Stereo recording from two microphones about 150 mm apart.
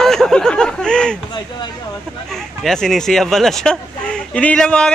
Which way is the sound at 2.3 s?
5° left (ahead or behind).